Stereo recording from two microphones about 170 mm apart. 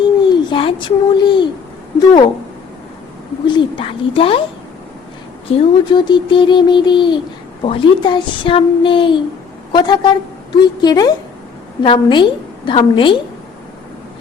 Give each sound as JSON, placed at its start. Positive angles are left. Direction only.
{"t": 0.3, "sound": "a child's voice", "side_deg": 30}
{"t": 3.4, "sound": "speech", "side_deg": 30}
{"t": 5.5, "sound": "speech", "side_deg": 30}